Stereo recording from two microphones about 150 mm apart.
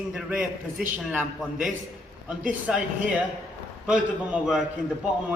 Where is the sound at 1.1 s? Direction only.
10° right (ahead or behind).